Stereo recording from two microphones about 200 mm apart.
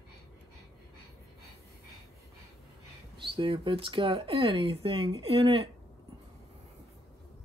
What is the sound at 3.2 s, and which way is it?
Speech, 25° right (ahead or behind).